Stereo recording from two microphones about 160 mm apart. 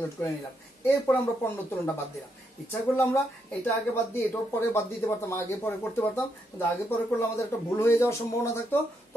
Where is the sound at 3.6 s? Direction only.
10° left (ahead or behind).